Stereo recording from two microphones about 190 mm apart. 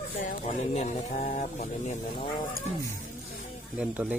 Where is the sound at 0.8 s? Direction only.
40° left (ahead or behind).